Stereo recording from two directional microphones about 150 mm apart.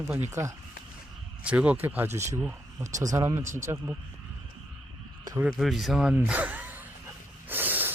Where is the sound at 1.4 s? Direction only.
10° right (ahead or behind).